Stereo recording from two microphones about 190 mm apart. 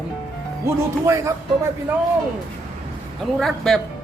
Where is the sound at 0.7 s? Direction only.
15° right (ahead or behind).